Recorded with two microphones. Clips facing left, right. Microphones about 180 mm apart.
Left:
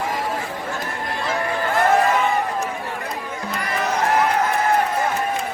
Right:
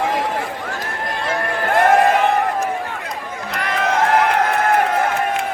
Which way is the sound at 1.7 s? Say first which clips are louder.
Right 4 dB; 60° right (ahead or behind).